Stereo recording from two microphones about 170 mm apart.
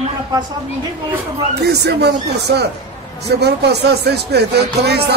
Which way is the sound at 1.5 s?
75° right (ahead or behind).